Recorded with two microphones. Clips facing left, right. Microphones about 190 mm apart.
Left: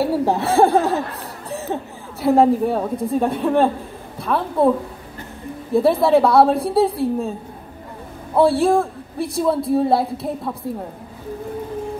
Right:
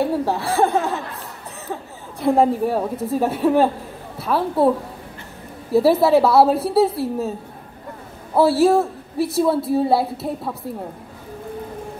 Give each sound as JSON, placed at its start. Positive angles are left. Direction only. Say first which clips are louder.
{"t": 0.2, "sound": "speech", "louder": "left 4 dB", "side_deg": 20}
{"t": 2.2, "sound": "a woman's voice", "louder": "left 2 dB", "side_deg": 0}
{"t": 5.7, "sound": "a woman's voice", "louder": "even", "side_deg": -5}
{"t": 8.4, "sound": "a woman's voice", "louder": "even", "side_deg": -5}